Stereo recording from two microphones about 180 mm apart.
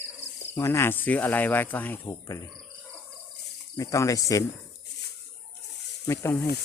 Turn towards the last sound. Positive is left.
turn(degrees=15)  # may be behind; listen again after turning